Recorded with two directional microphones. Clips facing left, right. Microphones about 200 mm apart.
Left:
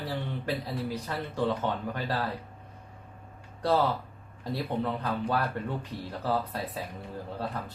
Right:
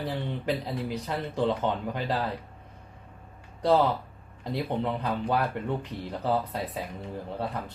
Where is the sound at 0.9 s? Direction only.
20° right (ahead or behind).